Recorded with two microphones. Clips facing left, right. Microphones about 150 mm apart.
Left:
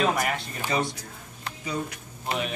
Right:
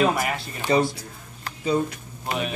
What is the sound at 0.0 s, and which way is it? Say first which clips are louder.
Speech: right 3 dB; 5° right (ahead or behind).